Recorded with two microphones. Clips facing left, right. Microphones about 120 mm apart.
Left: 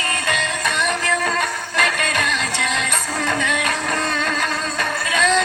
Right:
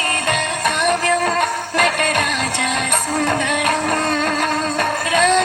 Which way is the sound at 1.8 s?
50° right (ahead or behind).